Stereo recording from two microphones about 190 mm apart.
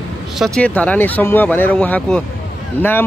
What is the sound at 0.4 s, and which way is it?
Speech, 5° left (ahead or behind).